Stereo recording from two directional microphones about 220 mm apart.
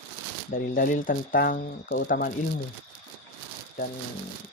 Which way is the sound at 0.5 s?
40° left (ahead or behind).